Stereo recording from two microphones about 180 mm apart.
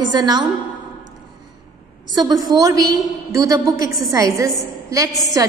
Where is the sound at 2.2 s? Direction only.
20° right (ahead or behind).